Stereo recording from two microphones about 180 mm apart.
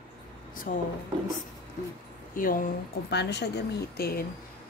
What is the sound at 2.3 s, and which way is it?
Speech, 50° left (ahead or behind).